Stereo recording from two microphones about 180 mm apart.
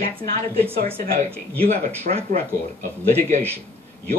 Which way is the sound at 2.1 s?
50° right (ahead or behind).